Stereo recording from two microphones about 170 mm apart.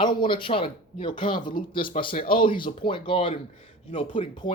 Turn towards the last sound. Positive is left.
turn(degrees=30)  # may be behind; listen again after turning